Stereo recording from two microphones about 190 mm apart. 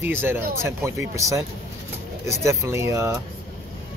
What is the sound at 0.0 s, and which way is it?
Speech, 10° right (ahead or behind).